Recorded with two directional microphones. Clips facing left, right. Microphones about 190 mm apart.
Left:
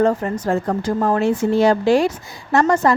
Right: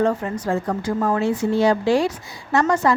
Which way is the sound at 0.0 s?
40° left (ahead or behind).